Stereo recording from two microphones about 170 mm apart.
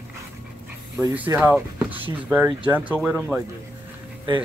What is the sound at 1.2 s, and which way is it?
Speech, 10° right (ahead or behind).